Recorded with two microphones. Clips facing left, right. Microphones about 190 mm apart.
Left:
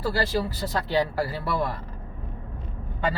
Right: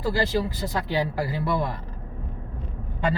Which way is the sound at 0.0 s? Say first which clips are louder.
Right 1 dB; 15° right (ahead or behind).